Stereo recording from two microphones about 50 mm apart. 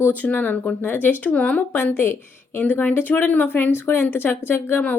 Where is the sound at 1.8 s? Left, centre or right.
Left.